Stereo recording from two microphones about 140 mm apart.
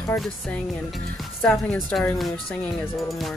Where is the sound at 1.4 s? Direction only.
10° left (ahead or behind).